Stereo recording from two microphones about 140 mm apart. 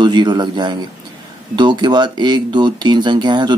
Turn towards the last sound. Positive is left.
turn(degrees=-30)  # may be behind; listen again after turning